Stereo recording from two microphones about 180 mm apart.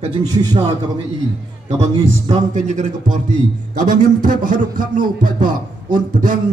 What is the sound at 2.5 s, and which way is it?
Speech, 45° right (ahead or behind).